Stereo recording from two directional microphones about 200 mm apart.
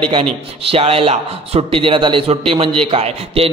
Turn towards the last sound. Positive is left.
turn(degrees=-30)  # may be behind; listen again after turning